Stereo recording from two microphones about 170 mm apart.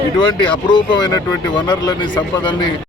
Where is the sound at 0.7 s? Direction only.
25° left (ahead or behind).